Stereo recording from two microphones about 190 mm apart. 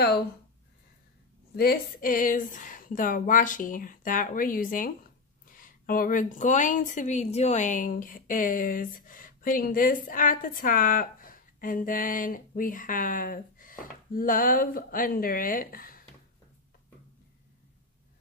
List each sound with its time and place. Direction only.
1.6 s a woman's voice: 50° left (ahead or behind)